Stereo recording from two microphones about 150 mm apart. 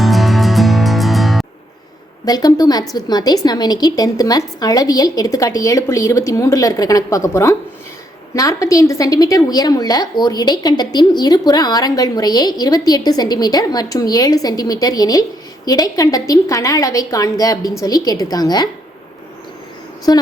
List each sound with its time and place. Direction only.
0.0 s music: centre (ahead or behind)
2.2 s a woman's voice: 25° left (ahead or behind)
20.1 s a woman's voice: 25° left (ahead or behind)